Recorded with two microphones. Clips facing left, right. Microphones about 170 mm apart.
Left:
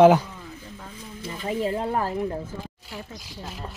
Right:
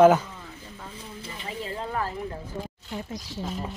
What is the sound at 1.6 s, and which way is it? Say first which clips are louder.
Speech: left 5 dB; 40° left (ahead or behind).